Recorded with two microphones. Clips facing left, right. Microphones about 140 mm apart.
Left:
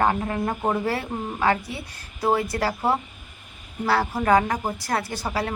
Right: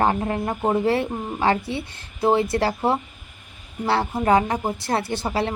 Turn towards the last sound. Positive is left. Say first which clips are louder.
# right 3 dB
turn(degrees=-25)  # may be behind; listen again after turning